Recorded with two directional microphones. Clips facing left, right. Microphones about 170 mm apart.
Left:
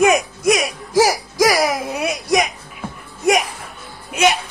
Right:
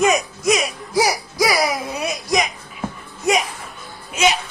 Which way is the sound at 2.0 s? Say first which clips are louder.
Left 3 dB; 55° left (ahead or behind).